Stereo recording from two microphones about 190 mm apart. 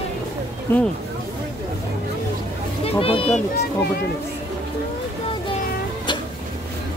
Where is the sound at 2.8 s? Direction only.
30° left (ahead or behind).